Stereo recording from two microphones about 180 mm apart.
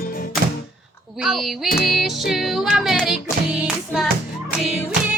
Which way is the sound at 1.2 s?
Centre (ahead or behind).